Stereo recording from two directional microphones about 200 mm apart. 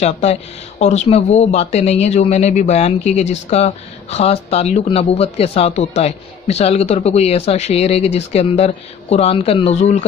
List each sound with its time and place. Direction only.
0.0 s speech: 35° left (ahead or behind)